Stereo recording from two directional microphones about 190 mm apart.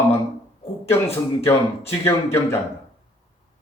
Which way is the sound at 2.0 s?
15° left (ahead or behind).